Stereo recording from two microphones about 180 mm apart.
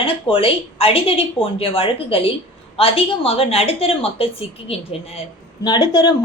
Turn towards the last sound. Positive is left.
turn(degrees=25)  # may be behind; listen again after turning